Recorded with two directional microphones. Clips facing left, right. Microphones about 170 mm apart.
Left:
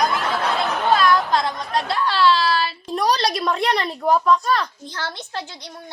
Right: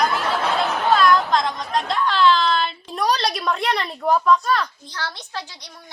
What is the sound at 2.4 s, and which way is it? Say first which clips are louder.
A woman's voice: even; centre (ahead or behind).